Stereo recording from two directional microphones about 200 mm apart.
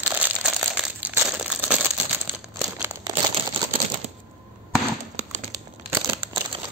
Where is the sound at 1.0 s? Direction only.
5° right (ahead or behind).